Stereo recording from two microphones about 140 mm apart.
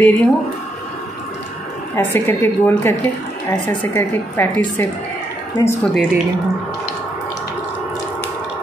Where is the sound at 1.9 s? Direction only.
15° left (ahead or behind).